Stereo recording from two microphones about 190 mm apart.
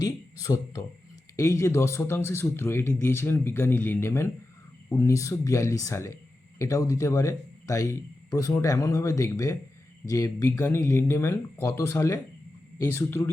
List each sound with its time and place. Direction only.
0.0 s speech: 20° left (ahead or behind)